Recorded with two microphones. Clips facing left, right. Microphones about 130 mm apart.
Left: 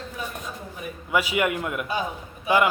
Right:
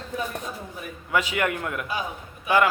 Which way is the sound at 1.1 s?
10° left (ahead or behind).